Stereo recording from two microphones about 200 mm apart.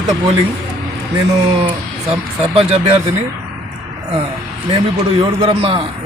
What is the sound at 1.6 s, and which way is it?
A man's voice, 30° right (ahead or behind).